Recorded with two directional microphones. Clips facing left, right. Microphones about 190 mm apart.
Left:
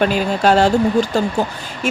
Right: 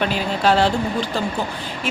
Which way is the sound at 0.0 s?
45° left (ahead or behind).